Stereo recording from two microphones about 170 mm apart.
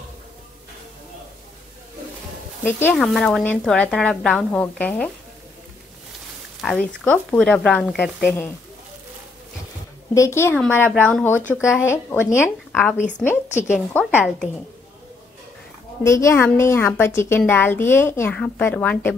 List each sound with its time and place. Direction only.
2.6 s a woman's voice: 10° left (ahead or behind)
3.0 s a woman's voice: centre (ahead or behind)
6.6 s a woman's voice: centre (ahead or behind)
10.1 s a woman's voice: 15° left (ahead or behind)
16.0 s a woman's voice: 20° left (ahead or behind)